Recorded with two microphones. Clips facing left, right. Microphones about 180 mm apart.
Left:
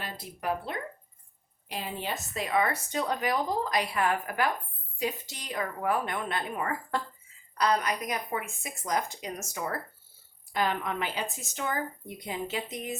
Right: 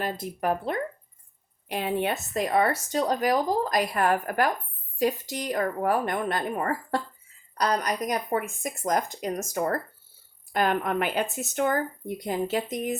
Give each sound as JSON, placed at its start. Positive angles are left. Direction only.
{"t": 0.0, "sound": "speech", "side_deg": -45}
{"t": 1.6, "sound": "a woman's voice", "side_deg": -65}
{"t": 2.4, "sound": "a woman's voice", "side_deg": -40}